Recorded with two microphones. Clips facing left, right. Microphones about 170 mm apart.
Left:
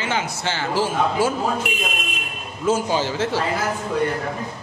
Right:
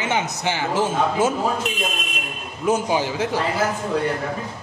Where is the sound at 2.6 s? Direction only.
15° right (ahead or behind).